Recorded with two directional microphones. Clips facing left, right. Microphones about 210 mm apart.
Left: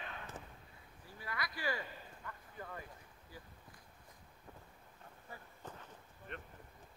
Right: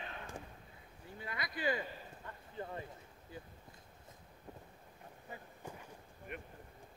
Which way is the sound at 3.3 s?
20° right (ahead or behind).